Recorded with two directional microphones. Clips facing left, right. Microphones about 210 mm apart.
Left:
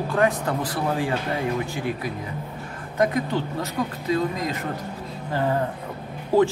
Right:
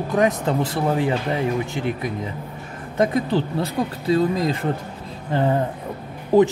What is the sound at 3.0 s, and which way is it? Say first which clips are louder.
Speech: right 3 dB; 30° right (ahead or behind).